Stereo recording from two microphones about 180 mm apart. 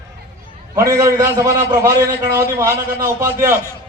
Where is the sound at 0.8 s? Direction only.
15° right (ahead or behind).